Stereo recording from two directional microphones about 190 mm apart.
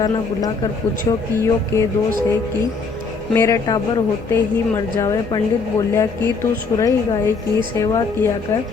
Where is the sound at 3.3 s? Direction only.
15° left (ahead or behind).